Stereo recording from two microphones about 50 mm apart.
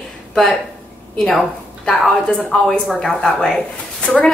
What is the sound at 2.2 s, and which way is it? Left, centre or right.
A woman's voice, centre.